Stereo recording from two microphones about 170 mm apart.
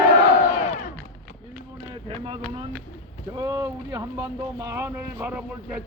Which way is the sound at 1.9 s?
30° right (ahead or behind).